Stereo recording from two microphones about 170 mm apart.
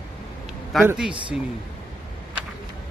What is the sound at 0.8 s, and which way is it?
Speech, 5° right (ahead or behind).